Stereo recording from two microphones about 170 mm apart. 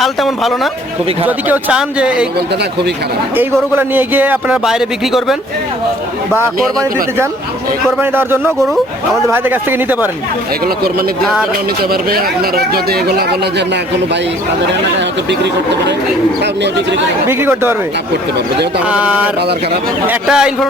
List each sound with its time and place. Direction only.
0.0 s a man's voice: centre (ahead or behind)
3.3 s speech: 10° right (ahead or behind)
7.9 s speech: 10° right (ahead or behind)
8.5 s a man's voice: centre (ahead or behind)
9.3 s speech: 10° right (ahead or behind)
11.2 s a man's voice: centre (ahead or behind)
11.8 s speech: 65° right (ahead or behind)
15.3 s speech: 90° right
17.2 s speech: 15° right (ahead or behind)
18.9 s a man's voice: 5° right (ahead or behind)